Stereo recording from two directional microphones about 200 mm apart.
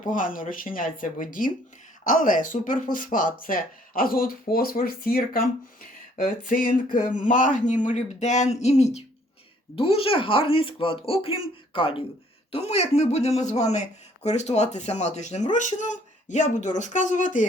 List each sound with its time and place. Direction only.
0.0 s speech: 40° left (ahead or behind)
6.9 s speech: 40° left (ahead or behind)